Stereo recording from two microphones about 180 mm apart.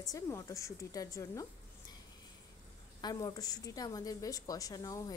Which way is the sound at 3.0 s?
20° left (ahead or behind).